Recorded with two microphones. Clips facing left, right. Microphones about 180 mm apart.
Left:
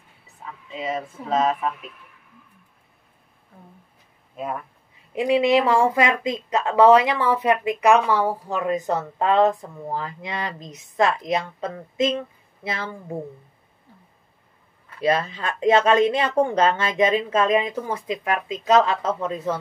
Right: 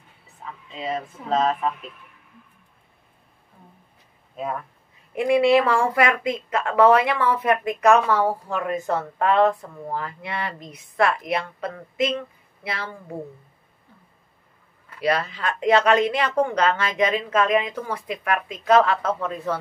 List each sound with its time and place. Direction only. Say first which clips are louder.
0.7 s speech: left 1 dB; 5° left (ahead or behind)
5.1 s a woman's voice: right 1 dB; 15° left (ahead or behind)
15.0 s a woman's voice: left 2 dB; 25° left (ahead or behind)